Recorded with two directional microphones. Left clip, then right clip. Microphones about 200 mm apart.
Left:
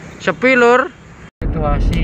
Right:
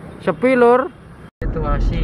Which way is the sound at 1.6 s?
20° left (ahead or behind).